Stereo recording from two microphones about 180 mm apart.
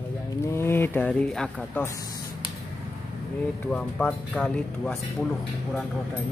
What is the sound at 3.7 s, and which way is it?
Speech, 5° left (ahead or behind).